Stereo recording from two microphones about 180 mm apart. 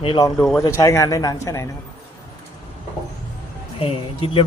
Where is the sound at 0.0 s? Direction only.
25° left (ahead or behind).